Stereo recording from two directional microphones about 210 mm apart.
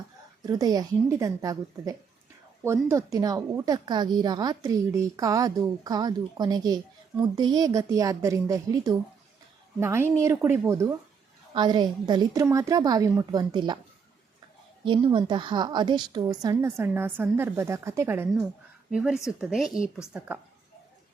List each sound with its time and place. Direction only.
0.4 s a woman's voice: 20° right (ahead or behind)
14.8 s a woman's voice: 25° right (ahead or behind)